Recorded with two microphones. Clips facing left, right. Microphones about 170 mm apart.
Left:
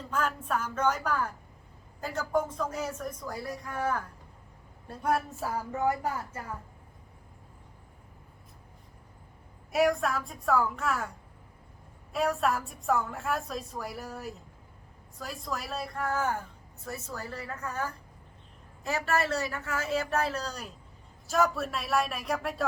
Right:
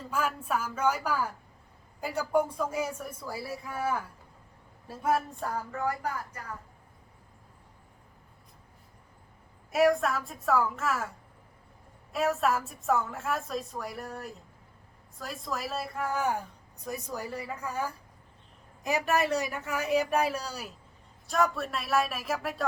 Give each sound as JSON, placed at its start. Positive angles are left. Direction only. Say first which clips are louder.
{"t": 0.1, "sound": "a woman's voice", "louder": "even", "side_deg": -10}
{"t": 5.7, "sound": "speech", "louder": "left 6 dB", "side_deg": 20}
{"t": 9.7, "sound": "a woman's voice", "louder": "right 2 dB", "side_deg": 0}
{"t": 12.1, "sound": "a woman's voice", "louder": "right 1 dB", "side_deg": 0}